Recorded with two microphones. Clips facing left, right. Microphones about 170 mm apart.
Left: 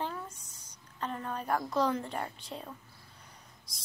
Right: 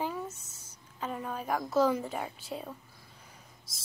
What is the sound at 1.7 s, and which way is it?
A woman's voice, 5° right (ahead or behind).